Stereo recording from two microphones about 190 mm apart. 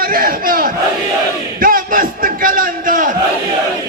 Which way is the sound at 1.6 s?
50° right (ahead or behind).